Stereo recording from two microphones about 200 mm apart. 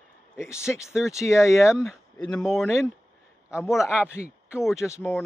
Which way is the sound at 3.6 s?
15° left (ahead or behind).